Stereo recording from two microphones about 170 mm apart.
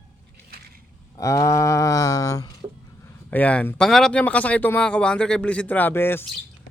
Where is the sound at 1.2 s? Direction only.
20° left (ahead or behind).